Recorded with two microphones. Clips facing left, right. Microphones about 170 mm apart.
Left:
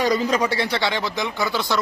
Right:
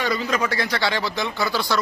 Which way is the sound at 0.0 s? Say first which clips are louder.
Left 4 dB; 40° left (ahead or behind).